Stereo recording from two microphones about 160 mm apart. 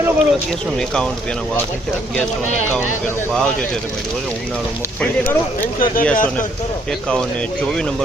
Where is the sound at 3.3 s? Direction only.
5° left (ahead or behind).